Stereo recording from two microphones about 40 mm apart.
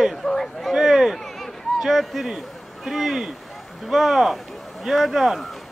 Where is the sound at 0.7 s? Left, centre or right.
Centre.